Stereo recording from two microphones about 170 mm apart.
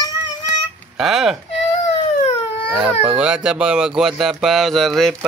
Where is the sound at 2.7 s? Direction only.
10° right (ahead or behind).